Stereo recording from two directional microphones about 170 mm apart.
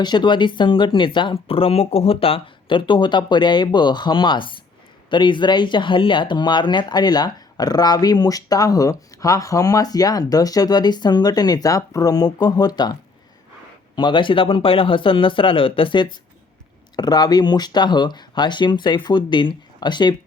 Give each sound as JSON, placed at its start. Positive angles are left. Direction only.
{"t": 0.0, "sound": "speech", "side_deg": 25}